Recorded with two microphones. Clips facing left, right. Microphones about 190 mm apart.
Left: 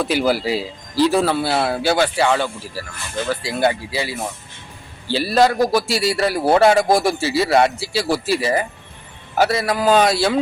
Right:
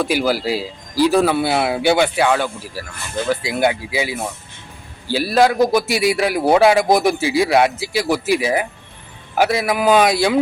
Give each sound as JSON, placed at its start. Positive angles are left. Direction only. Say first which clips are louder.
{"t": 0.1, "sound": "speech", "louder": "even", "side_deg": -10}
{"t": 2.2, "sound": "a man's voice", "louder": "right 1 dB", "side_deg": -5}
{"t": 3.2, "sound": "speech", "louder": "right 1 dB", "side_deg": -15}
{"t": 6.5, "sound": "speech", "louder": "right 1 dB", "side_deg": -5}
{"t": 9.4, "sound": "a man's voice", "louder": "right 1 dB", "side_deg": -5}